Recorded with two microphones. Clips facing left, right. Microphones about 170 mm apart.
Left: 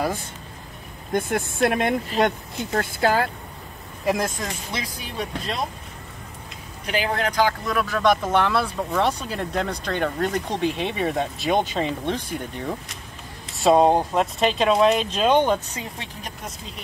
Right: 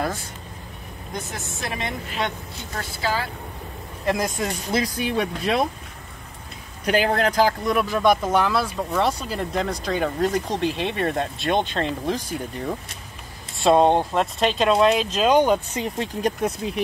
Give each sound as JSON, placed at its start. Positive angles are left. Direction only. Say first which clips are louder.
{"t": 1.1, "sound": "speech", "louder": "left 9 dB", "side_deg": 55}
{"t": 2.0, "sound": "speech", "louder": "left 6 dB", "side_deg": 45}
{"t": 4.0, "sound": "speech", "louder": "even", "side_deg": 5}
{"t": 4.7, "sound": "speech", "louder": "right 10 dB", "side_deg": -60}
{"t": 6.9, "sound": "speech", "louder": "right 4 dB", "side_deg": -45}
{"t": 7.6, "sound": "speech", "louder": "right 2 dB", "side_deg": -10}
{"t": 15.7, "sound": "speech", "louder": "right 8 dB", "side_deg": -30}
{"t": 16.2, "sound": "speech", "louder": "right 13 dB", "side_deg": -65}